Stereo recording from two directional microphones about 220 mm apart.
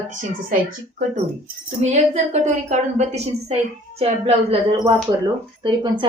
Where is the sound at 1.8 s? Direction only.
30° right (ahead or behind).